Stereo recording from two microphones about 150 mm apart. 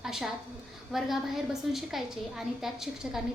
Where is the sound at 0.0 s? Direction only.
5° right (ahead or behind).